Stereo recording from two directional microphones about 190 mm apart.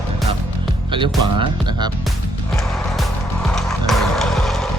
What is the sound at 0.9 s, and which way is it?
Speech, 25° right (ahead or behind).